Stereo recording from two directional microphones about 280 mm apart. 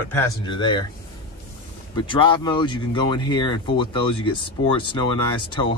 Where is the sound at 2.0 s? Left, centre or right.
Centre.